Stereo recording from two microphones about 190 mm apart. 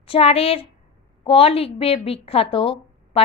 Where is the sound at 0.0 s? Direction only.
30° left (ahead or behind).